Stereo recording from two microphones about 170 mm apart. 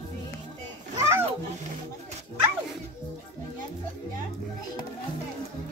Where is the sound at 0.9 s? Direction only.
15° right (ahead or behind).